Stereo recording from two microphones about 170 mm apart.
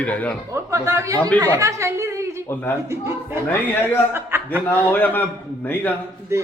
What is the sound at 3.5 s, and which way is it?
Speech, 15° left (ahead or behind).